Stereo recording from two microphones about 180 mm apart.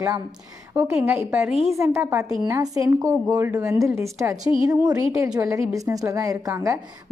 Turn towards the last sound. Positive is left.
turn(degrees=-15)  # may be behind; listen again after turning